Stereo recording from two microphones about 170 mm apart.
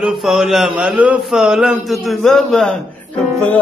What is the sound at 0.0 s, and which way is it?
A man's voice, centre (ahead or behind).